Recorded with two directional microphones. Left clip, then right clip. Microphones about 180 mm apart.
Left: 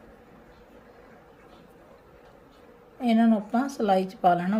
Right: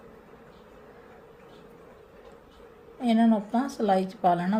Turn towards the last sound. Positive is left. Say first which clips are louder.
# left 2 dB
turn(degrees=10)  # may be behind; listen again after turning